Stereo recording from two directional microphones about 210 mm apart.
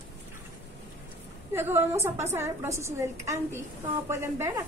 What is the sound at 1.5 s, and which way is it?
A woman's voice, 10° right (ahead or behind).